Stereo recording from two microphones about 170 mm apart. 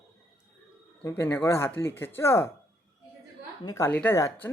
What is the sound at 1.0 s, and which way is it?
Speech, 15° left (ahead or behind).